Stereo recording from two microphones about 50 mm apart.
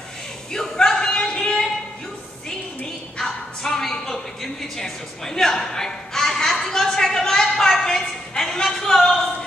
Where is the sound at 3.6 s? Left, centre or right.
Centre.